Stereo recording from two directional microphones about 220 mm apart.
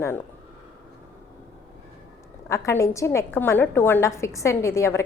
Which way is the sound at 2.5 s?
15° left (ahead or behind).